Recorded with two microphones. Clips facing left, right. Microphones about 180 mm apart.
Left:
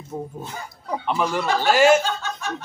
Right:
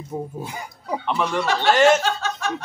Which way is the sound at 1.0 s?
5° left (ahead or behind).